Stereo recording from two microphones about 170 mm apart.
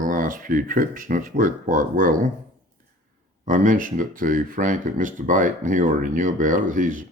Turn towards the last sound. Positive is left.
turn(degrees=-50)  # may be behind; listen again after turning